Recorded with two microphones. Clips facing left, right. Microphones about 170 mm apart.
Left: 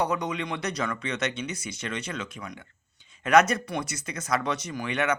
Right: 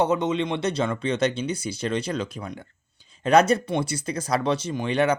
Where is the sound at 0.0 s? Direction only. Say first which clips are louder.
Right 6 dB; 25° right (ahead or behind).